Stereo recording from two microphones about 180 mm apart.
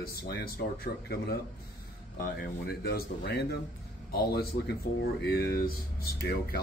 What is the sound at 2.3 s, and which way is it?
Speech, 60° left (ahead or behind).